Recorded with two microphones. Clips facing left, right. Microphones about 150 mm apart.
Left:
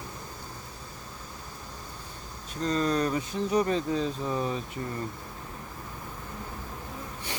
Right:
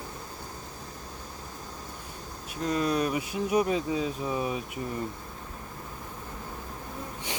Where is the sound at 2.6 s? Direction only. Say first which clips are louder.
Even; 10° right (ahead or behind).